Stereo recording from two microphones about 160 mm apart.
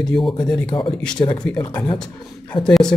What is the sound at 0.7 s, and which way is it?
Speech, 30° left (ahead or behind).